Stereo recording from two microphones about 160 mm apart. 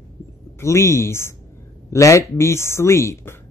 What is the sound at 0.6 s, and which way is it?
Speech, 15° left (ahead or behind).